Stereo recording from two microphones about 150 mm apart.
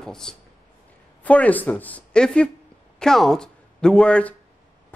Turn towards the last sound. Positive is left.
turn(degrees=5)  # may be behind; listen again after turning